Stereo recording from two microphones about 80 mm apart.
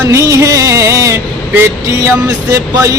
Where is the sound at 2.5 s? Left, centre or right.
Right.